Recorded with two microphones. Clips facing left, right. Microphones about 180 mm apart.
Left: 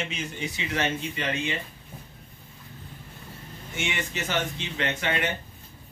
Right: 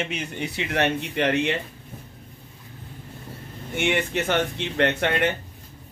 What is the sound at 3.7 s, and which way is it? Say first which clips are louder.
Speech: right 8 dB; 60° right (ahead or behind).